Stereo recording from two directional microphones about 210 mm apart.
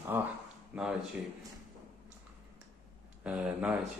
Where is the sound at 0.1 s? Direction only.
10° right (ahead or behind).